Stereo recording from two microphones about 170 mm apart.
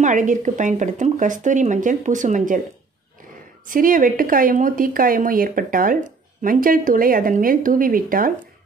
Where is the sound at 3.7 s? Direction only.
55° right (ahead or behind).